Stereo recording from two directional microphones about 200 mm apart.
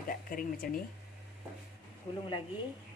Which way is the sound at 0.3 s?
45° left (ahead or behind).